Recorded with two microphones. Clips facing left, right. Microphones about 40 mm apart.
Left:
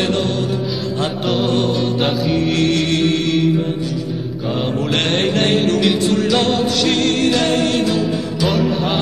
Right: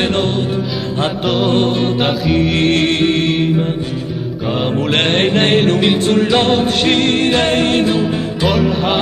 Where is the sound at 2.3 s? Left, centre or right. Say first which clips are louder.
Right 4 dB; right.